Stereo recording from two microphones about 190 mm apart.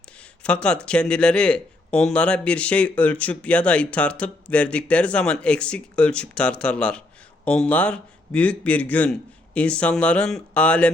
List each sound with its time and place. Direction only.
0.4 s a man's voice: 5° left (ahead or behind)